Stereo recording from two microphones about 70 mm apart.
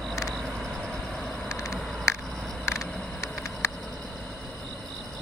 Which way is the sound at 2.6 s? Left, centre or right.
Left.